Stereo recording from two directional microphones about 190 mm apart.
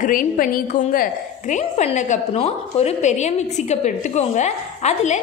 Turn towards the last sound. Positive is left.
turn(degrees=35)  # may be behind; listen again after turning